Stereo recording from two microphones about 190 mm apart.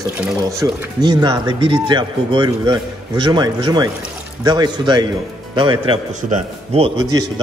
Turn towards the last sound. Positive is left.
turn(degrees=-25)  # may be behind; listen again after turning